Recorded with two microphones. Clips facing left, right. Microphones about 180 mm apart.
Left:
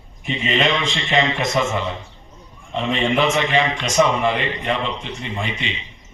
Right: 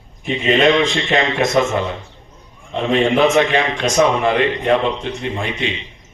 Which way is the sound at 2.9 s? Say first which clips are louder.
Right 6 dB; 50° right (ahead or behind).